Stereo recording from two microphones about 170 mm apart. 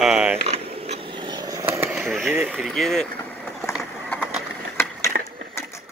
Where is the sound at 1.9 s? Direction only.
Centre (ahead or behind).